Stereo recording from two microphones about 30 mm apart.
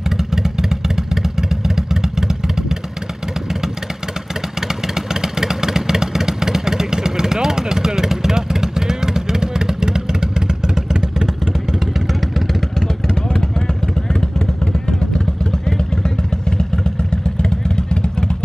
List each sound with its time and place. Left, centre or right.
0.2 s vehicle: centre
4.6 s vehicle: centre
11.8 s vehicle: centre
12.7 s vehicle: centre